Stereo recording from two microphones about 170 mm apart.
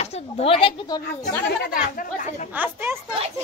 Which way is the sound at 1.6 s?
55° left (ahead or behind).